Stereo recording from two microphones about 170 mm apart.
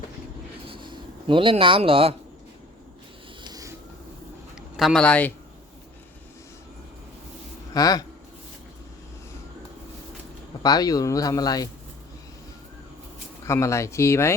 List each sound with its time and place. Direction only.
0.7 s a sound: 30° right (ahead or behind)
3.4 s a sound: 20° right (ahead or behind)
4.8 s speech: centre (ahead or behind)
7.7 s speech: 20° left (ahead or behind)
10.6 s speech: 20° left (ahead or behind)
13.4 s speech: 15° left (ahead or behind)